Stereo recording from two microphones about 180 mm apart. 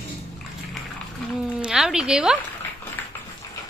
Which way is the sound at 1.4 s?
5° right (ahead or behind).